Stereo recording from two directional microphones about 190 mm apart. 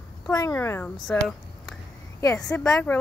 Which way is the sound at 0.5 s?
10° left (ahead or behind).